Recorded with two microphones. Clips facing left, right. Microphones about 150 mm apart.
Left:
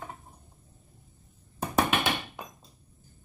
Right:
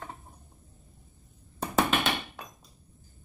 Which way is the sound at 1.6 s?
10° left (ahead or behind).